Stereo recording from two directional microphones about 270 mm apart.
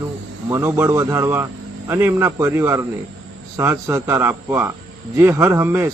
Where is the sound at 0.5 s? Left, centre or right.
Centre.